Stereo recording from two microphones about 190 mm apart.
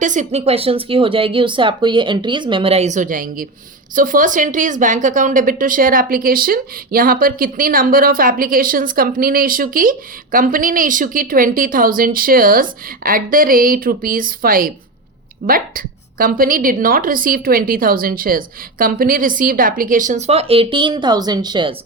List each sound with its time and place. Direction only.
0.0 s a woman's voice: 40° right (ahead or behind); by 21.8 s 25° right (ahead or behind)